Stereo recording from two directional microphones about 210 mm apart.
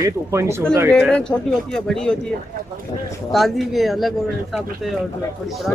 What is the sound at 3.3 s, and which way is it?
Speech, centre (ahead or behind).